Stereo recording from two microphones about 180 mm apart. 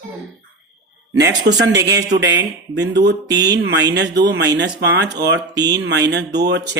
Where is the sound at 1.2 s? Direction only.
70° right (ahead or behind).